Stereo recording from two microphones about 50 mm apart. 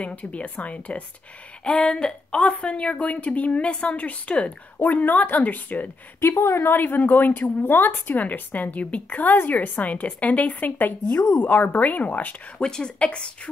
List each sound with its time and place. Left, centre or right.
0.0 s a woman's voice: left
6.2 s speech: left
12.5 s a woman's voice: centre